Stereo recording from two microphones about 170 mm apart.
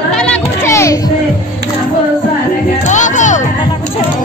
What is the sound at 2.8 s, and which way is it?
Music, 45° left (ahead or behind).